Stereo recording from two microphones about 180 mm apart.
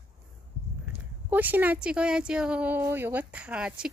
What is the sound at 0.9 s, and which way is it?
Speech, 10° right (ahead or behind).